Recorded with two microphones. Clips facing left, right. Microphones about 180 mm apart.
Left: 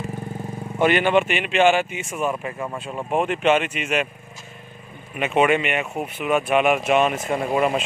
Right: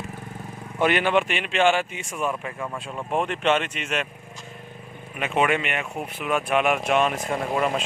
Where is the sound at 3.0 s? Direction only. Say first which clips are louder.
Left 3 dB; 5° left (ahead or behind).